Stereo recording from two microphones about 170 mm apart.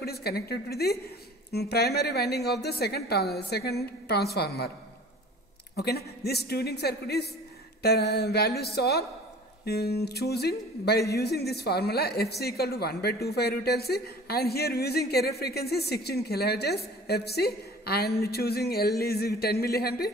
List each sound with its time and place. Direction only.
0.0 s a woman's voice: 70° left (ahead or behind)
5.8 s speech: 70° left (ahead or behind)